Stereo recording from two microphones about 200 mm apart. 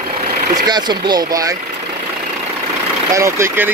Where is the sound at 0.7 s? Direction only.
20° right (ahead or behind).